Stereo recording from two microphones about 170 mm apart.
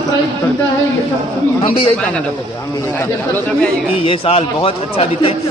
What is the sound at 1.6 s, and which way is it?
Speech, 35° left (ahead or behind).